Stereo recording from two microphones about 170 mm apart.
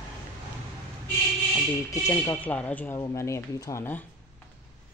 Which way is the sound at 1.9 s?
15° left (ahead or behind).